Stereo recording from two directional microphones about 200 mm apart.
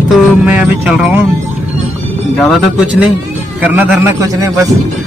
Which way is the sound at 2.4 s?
Centre (ahead or behind).